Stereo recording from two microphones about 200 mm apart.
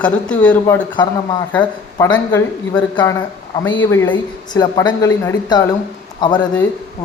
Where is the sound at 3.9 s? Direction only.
10° left (ahead or behind).